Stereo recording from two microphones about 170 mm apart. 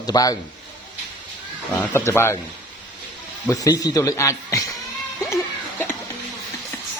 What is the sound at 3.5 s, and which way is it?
A man's voice, 20° left (ahead or behind).